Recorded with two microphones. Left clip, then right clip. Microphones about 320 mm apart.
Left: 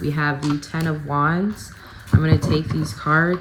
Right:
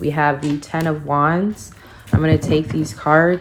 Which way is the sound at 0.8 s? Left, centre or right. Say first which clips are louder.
Right 5 dB; right.